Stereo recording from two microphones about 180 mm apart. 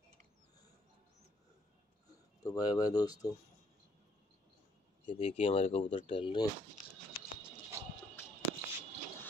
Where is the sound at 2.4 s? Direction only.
20° left (ahead or behind).